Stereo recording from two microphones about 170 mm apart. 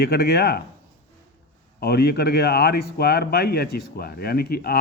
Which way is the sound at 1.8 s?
70° left (ahead or behind).